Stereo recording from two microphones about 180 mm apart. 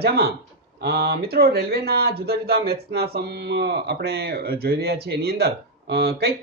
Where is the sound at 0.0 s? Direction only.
60° right (ahead or behind).